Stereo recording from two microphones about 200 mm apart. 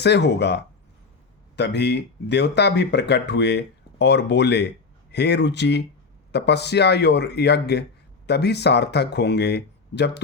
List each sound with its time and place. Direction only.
0.0 s speech: 60° left (ahead or behind)